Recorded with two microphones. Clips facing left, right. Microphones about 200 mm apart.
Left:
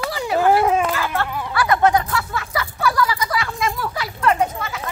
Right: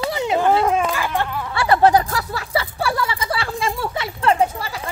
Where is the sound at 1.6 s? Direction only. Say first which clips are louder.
Right 2 dB; 30° right (ahead or behind).